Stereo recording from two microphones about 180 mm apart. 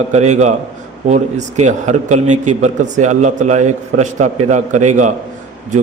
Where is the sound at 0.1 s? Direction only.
40° right (ahead or behind).